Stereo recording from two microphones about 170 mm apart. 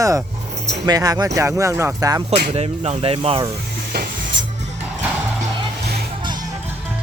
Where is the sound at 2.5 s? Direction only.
35° right (ahead or behind).